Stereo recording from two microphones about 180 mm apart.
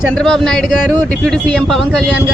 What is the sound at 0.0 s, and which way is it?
A man's voice, 5° left (ahead or behind).